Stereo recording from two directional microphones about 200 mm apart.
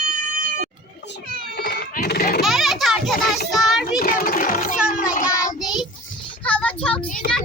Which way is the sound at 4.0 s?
45° left (ahead or behind).